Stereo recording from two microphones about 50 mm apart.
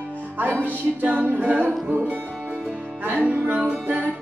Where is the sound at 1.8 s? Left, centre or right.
Right.